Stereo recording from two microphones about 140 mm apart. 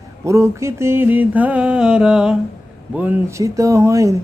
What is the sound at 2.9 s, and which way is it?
Speech, 10° right (ahead or behind).